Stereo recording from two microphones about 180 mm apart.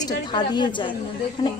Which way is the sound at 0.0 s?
25° left (ahead or behind).